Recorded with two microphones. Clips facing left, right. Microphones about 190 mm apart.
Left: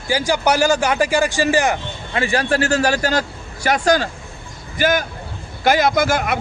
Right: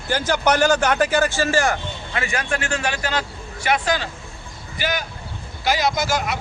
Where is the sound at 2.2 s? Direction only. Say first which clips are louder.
Left 7 dB; 35° left (ahead or behind).